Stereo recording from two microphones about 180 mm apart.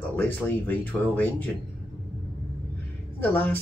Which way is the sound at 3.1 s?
10° left (ahead or behind).